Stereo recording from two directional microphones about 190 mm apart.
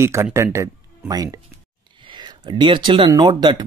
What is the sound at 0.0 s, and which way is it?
Speech, 15° right (ahead or behind).